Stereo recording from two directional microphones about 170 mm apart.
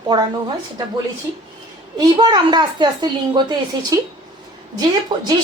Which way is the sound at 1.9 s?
25° right (ahead or behind).